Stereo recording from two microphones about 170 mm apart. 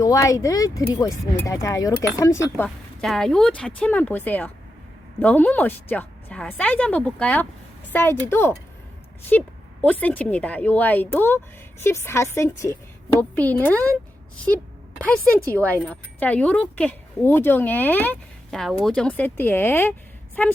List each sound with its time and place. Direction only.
0.0 s speech: 20° left (ahead or behind)
2.6 s a woman's voice: centre (ahead or behind)
15.0 s a woman's voice: 10° left (ahead or behind)